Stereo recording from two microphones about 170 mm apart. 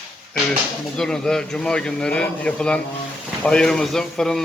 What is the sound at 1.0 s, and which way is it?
Speech, 5° left (ahead or behind).